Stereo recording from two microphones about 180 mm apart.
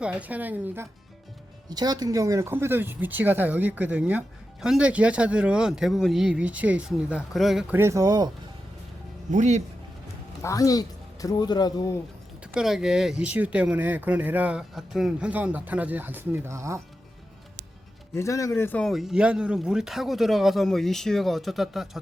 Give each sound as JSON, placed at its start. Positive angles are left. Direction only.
{"t": 0.0, "sound": "speech", "side_deg": -5}
{"t": 1.7, "sound": "speech", "side_deg": -20}
{"t": 7.8, "sound": "speech", "side_deg": -15}
{"t": 9.3, "sound": "speech", "side_deg": -40}
{"t": 10.4, "sound": "speech", "side_deg": 20}
{"t": 12.5, "sound": "speech", "side_deg": -5}
{"t": 18.1, "sound": "speech", "side_deg": 15}